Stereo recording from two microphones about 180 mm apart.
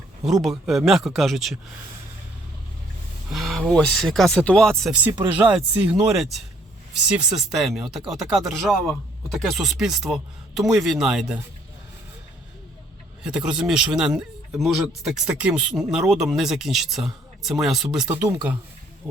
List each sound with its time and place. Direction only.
0.4 s a man's voice: centre (ahead or behind)
3.3 s a man's voice: centre (ahead or behind)
5.1 s speech: 25° right (ahead or behind)
5.5 s a man's voice: 5° right (ahead or behind)
13.2 s a man's voice: 5° right (ahead or behind)